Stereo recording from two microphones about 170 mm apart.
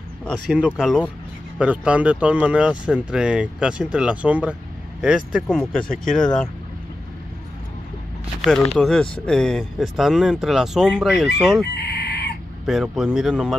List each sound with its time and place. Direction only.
0.2 s speech: centre (ahead or behind)
8.7 s speech: 5° left (ahead or behind)
11.6 s chicken: 75° left (ahead or behind)
12.6 s speech: centre (ahead or behind)